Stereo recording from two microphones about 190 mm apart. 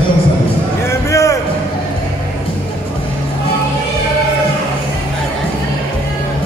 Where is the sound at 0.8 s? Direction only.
15° left (ahead or behind).